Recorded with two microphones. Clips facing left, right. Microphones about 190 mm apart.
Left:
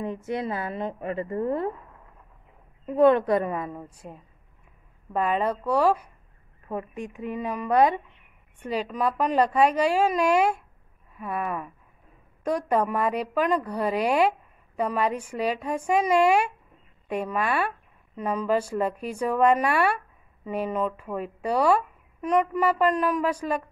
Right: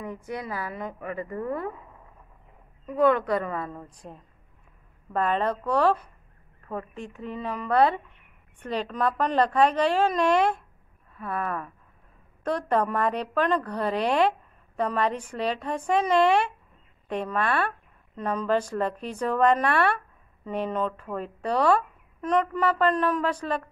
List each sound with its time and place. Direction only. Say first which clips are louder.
0.0 s a woman's voice: left 5 dB; 25° left (ahead or behind)
2.9 s speech: left 3 dB; 25° left (ahead or behind); by 23.6 s 10° left (ahead or behind)